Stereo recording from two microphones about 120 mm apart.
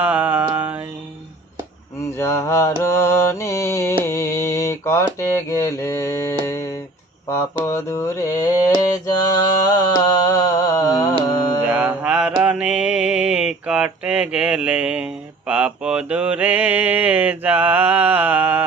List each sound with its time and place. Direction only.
0.0 s a sound: 15° right (ahead or behind)
2.0 s mantra: 25° left (ahead or behind)
6.4 s humming: 25° left (ahead or behind)
7.3 s mantra: 25° left (ahead or behind)
11.7 s mantra: 10° right (ahead or behind)